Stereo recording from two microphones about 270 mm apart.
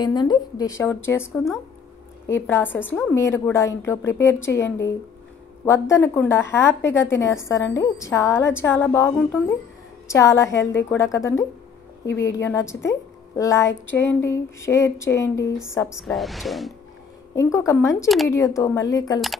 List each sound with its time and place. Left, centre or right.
0.0 s a woman's voice: centre
16.0 s speech: centre
17.4 s a woman's voice: centre
18.0 s speech: centre
18.3 s a woman's voice: centre